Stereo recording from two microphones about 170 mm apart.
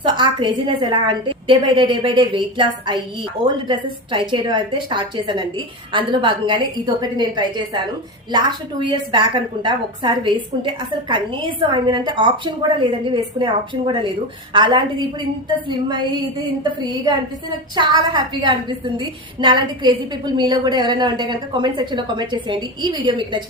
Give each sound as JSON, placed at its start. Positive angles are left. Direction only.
{"t": 0.0, "sound": "a woman's voice", "side_deg": -30}
{"t": 17.7, "sound": "a woman's voice", "side_deg": -30}